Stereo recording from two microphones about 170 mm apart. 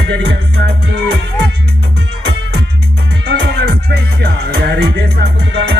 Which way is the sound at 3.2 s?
80° right.